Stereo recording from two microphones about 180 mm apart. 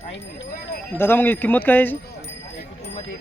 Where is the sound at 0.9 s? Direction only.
10° left (ahead or behind).